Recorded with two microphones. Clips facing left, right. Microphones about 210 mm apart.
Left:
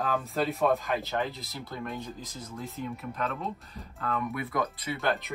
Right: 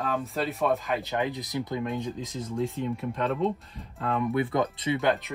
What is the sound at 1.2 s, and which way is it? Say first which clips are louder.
Speech: right 5 dB; 15° right (ahead or behind).